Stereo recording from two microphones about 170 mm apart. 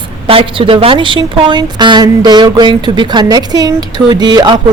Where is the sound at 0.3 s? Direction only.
35° right (ahead or behind).